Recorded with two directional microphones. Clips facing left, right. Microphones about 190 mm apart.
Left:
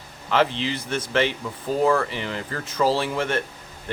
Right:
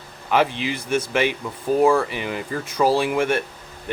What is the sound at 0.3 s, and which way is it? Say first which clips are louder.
Speech: right 1 dB; 15° right (ahead or behind).